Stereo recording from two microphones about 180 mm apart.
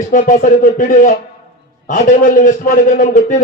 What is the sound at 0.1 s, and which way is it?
Speech, 50° left (ahead or behind).